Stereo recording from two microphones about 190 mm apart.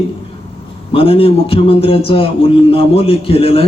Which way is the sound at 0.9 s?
30° left (ahead or behind).